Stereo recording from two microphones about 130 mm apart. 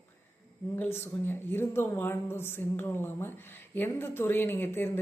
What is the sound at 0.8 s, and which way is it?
Speech, 20° left (ahead or behind).